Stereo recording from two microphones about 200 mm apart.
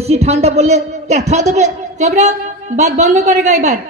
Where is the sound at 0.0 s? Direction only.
30° right (ahead or behind).